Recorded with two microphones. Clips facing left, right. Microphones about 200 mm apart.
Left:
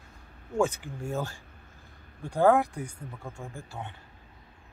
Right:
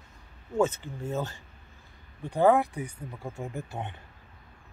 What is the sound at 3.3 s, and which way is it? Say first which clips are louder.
Speech: right 5 dB; 20° right (ahead or behind).